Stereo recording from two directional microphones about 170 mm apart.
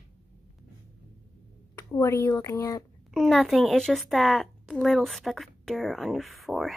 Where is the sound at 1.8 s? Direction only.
15° left (ahead or behind).